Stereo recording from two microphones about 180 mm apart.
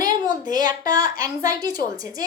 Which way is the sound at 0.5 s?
20° right (ahead or behind).